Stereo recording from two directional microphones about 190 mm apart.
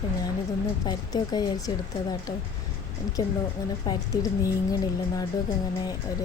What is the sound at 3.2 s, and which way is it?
A woman's voice, 20° left (ahead or behind).